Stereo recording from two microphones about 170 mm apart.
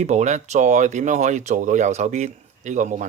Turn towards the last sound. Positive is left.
turn(degrees=-45)  # may be behind; listen again after turning